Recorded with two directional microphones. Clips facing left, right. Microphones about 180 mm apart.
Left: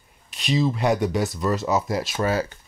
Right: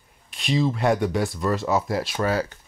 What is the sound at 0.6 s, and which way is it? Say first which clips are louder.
Speech: even; centre (ahead or behind).